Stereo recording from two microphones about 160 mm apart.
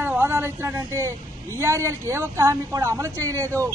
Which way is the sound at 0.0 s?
15° right (ahead or behind).